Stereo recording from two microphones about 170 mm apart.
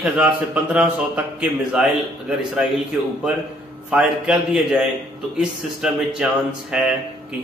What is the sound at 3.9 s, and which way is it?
Speech, 5° right (ahead or behind).